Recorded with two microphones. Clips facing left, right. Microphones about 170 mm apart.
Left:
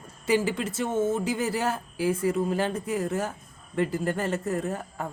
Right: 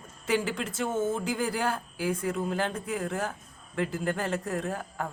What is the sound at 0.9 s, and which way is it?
Speech, 25° left (ahead or behind).